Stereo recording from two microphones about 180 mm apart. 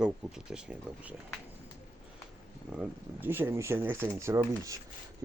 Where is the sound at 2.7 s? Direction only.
10° right (ahead or behind).